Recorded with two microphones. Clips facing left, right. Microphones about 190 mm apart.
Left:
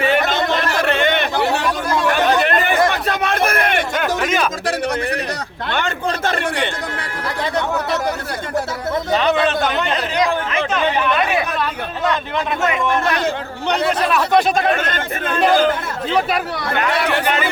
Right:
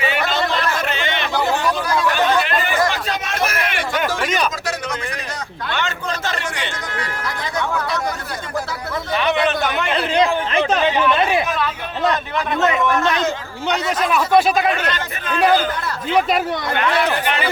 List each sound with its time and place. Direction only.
0.0 s a sound: 50° left (ahead or behind)
3.9 s a sound: centre (ahead or behind)
6.2 s a sound: 55° left (ahead or behind)
9.1 s a man's voice: 30° left (ahead or behind)
10.2 s speech: 35° right (ahead or behind)
12.7 s a man's voice: 25° left (ahead or behind)
13.7 s speech: 60° left (ahead or behind)
14.1 s speech: 5° right (ahead or behind)
14.7 s speech: 50° left (ahead or behind)